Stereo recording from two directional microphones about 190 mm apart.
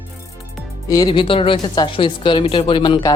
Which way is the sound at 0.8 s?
20° left (ahead or behind).